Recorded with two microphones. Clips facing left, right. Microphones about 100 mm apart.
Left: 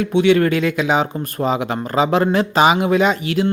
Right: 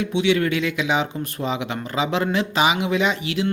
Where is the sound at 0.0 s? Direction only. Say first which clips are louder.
Left 6 dB; 50° left (ahead or behind).